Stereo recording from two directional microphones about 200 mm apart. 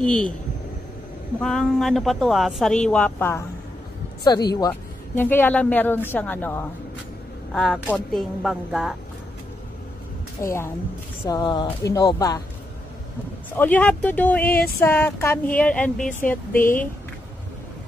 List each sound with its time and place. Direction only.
0.0 s speech: 5° left (ahead or behind)
1.4 s a woman's voice: 5° left (ahead or behind)
10.4 s a woman's voice: 15° left (ahead or behind)
13.6 s a woman's voice: 10° left (ahead or behind)